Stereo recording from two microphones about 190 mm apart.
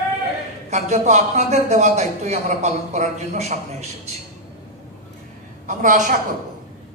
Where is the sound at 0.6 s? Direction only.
40° right (ahead or behind).